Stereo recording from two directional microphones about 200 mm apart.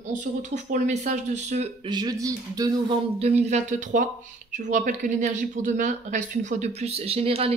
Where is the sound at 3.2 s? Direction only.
35° right (ahead or behind).